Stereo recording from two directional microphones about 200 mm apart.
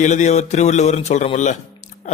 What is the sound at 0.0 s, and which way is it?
A man's voice, 35° left (ahead or behind).